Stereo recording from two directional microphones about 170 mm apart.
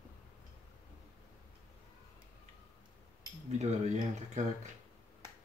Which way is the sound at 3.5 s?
40° right (ahead or behind).